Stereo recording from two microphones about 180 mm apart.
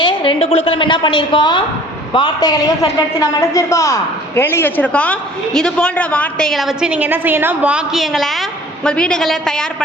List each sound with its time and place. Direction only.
0.0 s a woman's voice: 25° left (ahead or behind); by 9.6 s 5° left (ahead or behind)